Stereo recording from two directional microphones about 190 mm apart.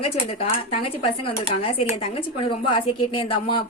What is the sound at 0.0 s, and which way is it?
Speech, 30° left (ahead or behind).